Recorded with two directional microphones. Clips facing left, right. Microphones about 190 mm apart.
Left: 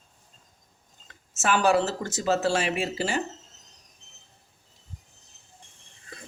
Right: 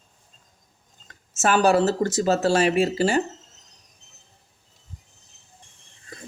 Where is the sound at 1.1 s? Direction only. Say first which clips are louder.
Right 4 dB; 40° right (ahead or behind).